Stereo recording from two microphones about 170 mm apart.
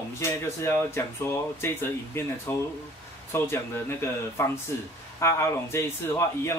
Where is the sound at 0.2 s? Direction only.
15° left (ahead or behind).